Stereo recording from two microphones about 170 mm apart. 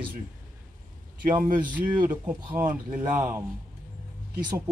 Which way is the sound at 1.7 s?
10° right (ahead or behind).